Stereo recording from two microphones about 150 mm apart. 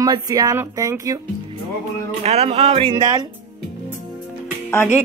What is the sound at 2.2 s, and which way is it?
Speech, 45° right (ahead or behind).